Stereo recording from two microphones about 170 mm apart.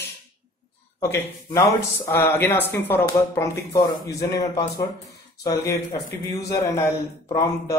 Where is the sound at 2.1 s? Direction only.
15° left (ahead or behind).